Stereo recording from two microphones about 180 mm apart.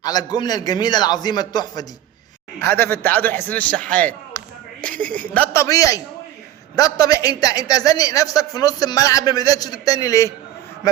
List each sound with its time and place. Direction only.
0.0 s a man's voice: 20° left (ahead or behind)
2.6 s speech: 10° left (ahead or behind)
5.6 s a man's voice: 20° left (ahead or behind)